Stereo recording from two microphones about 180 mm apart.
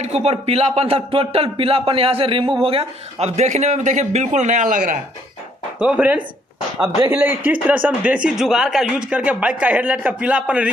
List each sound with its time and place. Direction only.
0.0 s speech: 35° right (ahead or behind)
5.8 s speech: 5° right (ahead or behind)